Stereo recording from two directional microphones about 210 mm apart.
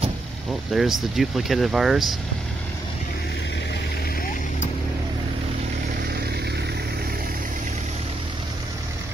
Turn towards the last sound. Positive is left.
turn(degrees=-45)  # may be behind; listen again after turning